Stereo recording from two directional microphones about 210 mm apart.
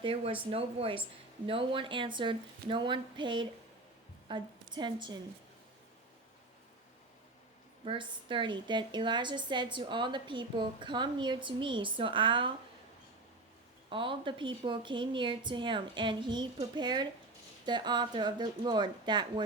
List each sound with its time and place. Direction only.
0.0 s a woman's voice: 25° right (ahead or behind)
7.9 s a woman's voice: 25° right (ahead or behind)
13.9 s a woman's voice: 25° right (ahead or behind)